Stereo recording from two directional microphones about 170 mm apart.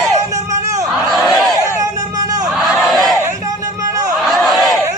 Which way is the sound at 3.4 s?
20° right (ahead or behind).